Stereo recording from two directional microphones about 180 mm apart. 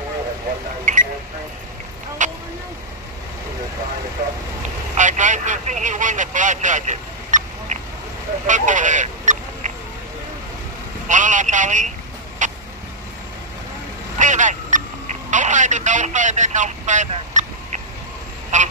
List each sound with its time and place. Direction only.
0.9 s a sound: 45° right (ahead or behind)
2.2 s vehicle: 45° right (ahead or behind)
4.9 s speech: 45° right (ahead or behind)
8.5 s goose: 45° right (ahead or behind)
11.1 s speech: 45° right (ahead or behind)
12.4 s vehicle: 45° right (ahead or behind)
14.1 s vehicle: 45° right (ahead or behind)
15.3 s speech: 45° right (ahead or behind)
18.5 s goose: 45° right (ahead or behind)